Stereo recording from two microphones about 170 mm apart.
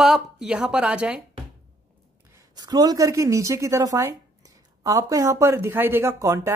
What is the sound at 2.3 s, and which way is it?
A woman's voice, 20° right (ahead or behind).